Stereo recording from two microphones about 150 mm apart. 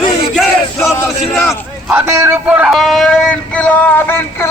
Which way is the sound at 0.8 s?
15° left (ahead or behind).